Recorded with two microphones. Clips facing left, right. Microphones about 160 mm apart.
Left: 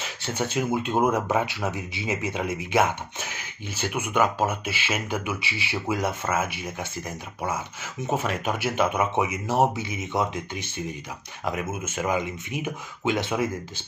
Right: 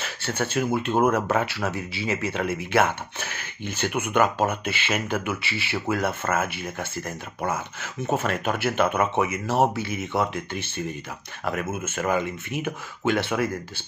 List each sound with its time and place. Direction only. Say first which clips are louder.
0.0 s speech: right 1 dB; 15° left (ahead or behind)